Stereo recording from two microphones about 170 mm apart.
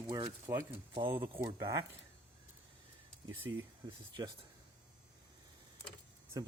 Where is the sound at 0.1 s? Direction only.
25° right (ahead or behind).